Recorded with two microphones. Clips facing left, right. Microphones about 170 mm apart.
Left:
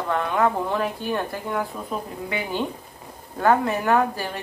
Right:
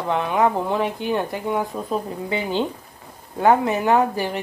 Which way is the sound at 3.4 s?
20° right (ahead or behind).